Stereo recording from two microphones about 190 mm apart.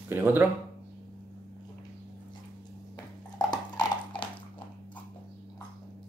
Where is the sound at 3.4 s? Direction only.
20° left (ahead or behind).